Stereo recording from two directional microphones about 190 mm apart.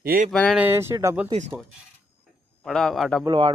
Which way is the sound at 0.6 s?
15° right (ahead or behind).